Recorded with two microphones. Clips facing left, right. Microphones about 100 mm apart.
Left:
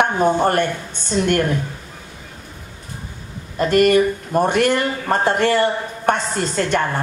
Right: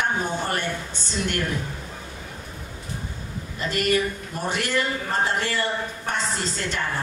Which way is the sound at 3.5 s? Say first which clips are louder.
Left 10 dB; 50° left (ahead or behind).